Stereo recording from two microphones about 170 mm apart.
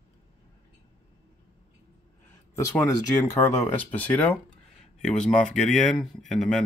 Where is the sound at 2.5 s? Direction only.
20° left (ahead or behind); by 6.6 s 5° left (ahead or behind).